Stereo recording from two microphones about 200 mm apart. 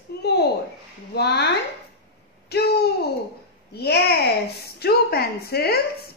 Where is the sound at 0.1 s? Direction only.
55° left (ahead or behind).